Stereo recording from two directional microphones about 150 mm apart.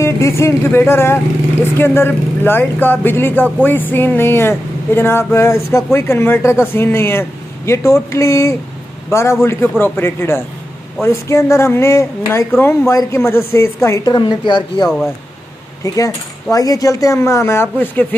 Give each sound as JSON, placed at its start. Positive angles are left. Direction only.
{"t": 0.0, "sound": "a sound", "side_deg": 20}
{"t": 14.9, "sound": "speech", "side_deg": 0}
{"t": 15.8, "sound": "speech", "side_deg": 25}